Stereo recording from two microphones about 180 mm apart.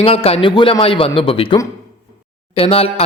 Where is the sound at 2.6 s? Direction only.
30° left (ahead or behind).